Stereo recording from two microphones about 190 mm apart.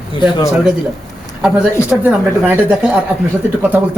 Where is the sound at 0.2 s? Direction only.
25° left (ahead or behind).